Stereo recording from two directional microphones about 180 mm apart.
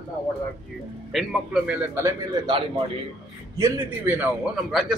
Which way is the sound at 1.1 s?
Centre (ahead or behind).